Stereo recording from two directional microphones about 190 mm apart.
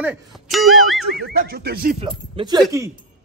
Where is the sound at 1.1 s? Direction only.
50° right (ahead or behind).